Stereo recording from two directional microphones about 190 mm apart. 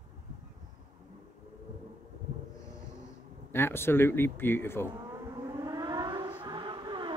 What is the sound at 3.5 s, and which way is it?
Speech, 10° left (ahead or behind).